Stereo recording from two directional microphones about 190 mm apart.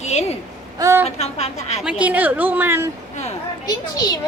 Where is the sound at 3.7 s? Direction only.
20° left (ahead or behind).